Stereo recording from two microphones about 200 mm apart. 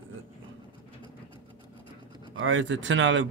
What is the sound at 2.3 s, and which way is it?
Speech, 70° right (ahead or behind).